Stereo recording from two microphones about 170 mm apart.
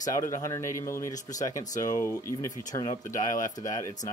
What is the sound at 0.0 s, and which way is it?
Speech, 20° left (ahead or behind).